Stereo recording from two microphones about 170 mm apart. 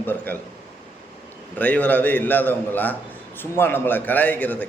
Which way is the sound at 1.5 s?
10° left (ahead or behind).